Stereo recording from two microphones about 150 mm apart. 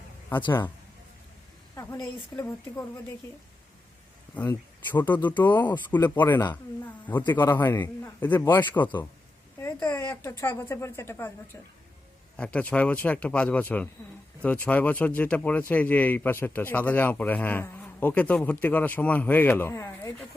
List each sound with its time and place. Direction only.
2.3 s speech: 15° left (ahead or behind)
4.4 s speech: 10° left (ahead or behind)
12.4 s speech: 10° left (ahead or behind)